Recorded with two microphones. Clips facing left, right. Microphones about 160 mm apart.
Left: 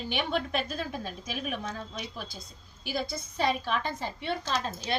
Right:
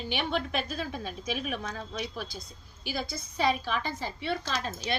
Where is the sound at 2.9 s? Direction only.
50° left (ahead or behind).